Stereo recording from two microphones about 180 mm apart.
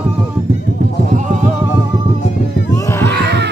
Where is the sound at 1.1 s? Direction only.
45° right (ahead or behind).